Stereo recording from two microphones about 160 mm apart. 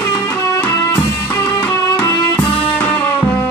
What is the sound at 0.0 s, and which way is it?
Music, 15° left (ahead or behind).